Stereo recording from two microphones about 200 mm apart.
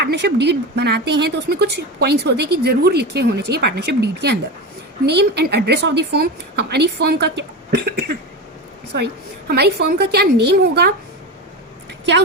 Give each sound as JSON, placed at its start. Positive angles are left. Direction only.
{"t": 0.0, "sound": "speech", "side_deg": -55}
{"t": 9.5, "sound": "speech", "side_deg": -55}